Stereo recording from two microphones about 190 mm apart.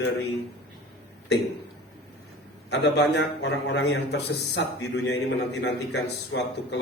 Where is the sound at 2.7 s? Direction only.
65° left (ahead or behind).